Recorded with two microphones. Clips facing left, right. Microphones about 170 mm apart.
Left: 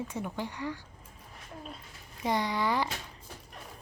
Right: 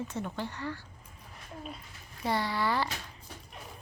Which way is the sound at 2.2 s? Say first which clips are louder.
Left 1 dB; 15° left (ahead or behind).